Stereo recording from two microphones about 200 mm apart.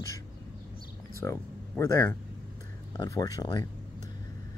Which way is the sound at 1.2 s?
15° left (ahead or behind).